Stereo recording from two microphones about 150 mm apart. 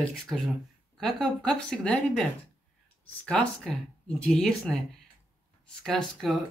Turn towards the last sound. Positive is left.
turn(degrees=0)  # may be behind; listen again after turning